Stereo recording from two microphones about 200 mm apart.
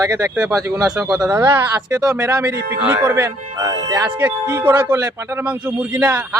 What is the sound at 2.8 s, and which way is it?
Speech, 10° right (ahead or behind).